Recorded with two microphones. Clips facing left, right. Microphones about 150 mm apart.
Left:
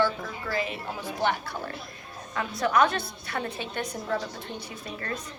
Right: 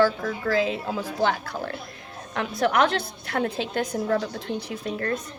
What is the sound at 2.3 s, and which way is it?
A woman's voice, 70° right (ahead or behind).